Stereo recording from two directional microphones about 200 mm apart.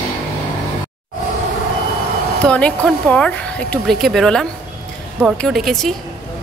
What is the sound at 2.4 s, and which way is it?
Speech, 5° left (ahead or behind).